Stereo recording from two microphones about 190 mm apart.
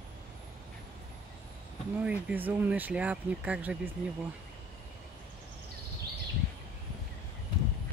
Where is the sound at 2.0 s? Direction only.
5° right (ahead or behind).